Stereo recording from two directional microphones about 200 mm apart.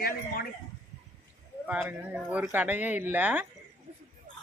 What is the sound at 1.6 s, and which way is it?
Speech, 5° right (ahead or behind).